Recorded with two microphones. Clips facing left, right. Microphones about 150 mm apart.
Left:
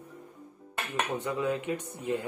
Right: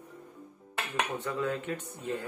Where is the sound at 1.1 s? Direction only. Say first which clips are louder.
Left 2 dB; 15° left (ahead or behind).